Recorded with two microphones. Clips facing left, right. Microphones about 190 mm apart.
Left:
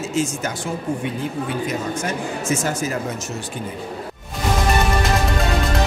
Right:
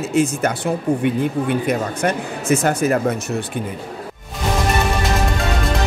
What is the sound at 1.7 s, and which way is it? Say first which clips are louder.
Speech: right 5 dB; 60° right (ahead or behind).